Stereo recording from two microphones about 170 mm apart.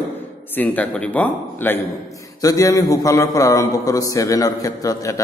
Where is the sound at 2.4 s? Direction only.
20° left (ahead or behind).